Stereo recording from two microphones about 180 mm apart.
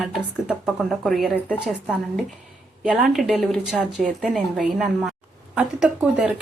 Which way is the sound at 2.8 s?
Centre (ahead or behind).